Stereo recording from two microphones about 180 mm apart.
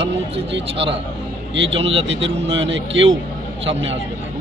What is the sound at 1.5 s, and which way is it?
A man's voice, 90° right.